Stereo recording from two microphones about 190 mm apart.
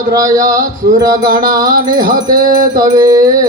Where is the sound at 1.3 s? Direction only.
45° right (ahead or behind).